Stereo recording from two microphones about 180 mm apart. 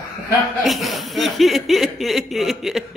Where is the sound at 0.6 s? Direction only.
Centre (ahead or behind).